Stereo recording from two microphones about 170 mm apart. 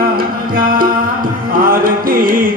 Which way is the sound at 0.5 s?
55° right (ahead or behind).